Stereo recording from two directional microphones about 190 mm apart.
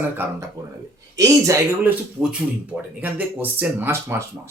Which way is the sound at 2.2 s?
5° right (ahead or behind).